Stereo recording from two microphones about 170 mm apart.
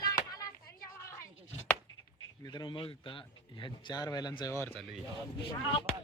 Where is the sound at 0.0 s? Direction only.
20° left (ahead or behind).